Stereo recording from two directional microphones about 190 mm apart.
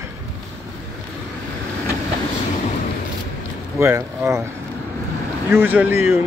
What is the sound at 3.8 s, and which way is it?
Speech, 15° right (ahead or behind).